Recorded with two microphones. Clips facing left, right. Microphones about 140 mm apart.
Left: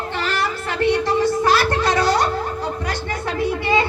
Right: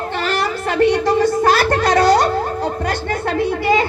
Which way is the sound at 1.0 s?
50° right (ahead or behind).